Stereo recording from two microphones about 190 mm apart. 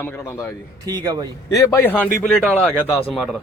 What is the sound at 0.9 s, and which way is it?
Speech, 20° right (ahead or behind).